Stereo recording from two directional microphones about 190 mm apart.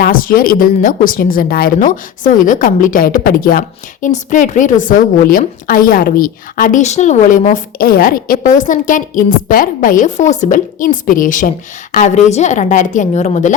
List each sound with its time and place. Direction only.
0.0 s a woman's voice: 45° left (ahead or behind)